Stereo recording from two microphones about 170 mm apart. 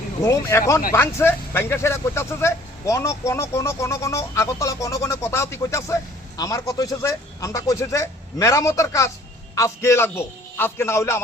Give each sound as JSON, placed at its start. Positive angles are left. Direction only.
{"t": 0.2, "sound": "speech", "side_deg": 15}